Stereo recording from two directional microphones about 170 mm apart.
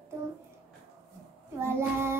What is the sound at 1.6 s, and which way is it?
Child singing, 15° right (ahead or behind).